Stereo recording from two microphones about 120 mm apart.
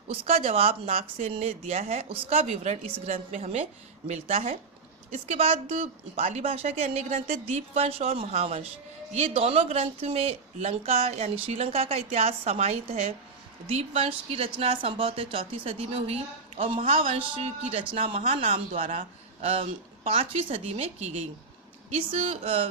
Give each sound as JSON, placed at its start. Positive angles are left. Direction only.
{"t": 0.1, "sound": "speech", "side_deg": -60}
{"t": 21.8, "sound": "speech", "side_deg": -55}